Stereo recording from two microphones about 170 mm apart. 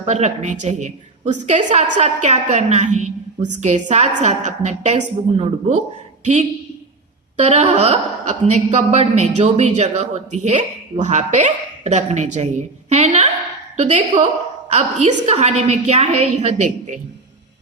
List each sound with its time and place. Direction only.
0.0 s a woman's voice: 45° right (ahead or behind)
7.3 s a woman's voice: 45° right (ahead or behind)